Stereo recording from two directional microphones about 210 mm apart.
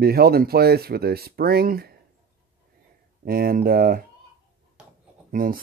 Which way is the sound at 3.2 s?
45° right (ahead or behind).